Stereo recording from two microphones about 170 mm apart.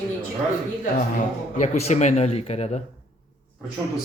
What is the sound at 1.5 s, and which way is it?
Speech, 45° left (ahead or behind).